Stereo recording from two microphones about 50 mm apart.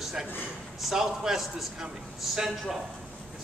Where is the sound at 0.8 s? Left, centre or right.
Centre.